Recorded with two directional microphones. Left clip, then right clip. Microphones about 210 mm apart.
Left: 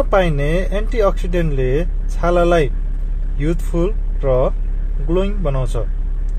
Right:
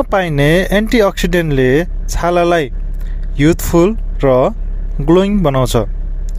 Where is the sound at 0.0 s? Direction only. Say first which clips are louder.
Right 3 dB; 40° right (ahead or behind).